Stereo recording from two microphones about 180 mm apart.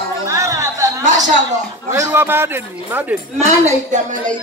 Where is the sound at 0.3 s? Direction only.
15° right (ahead or behind).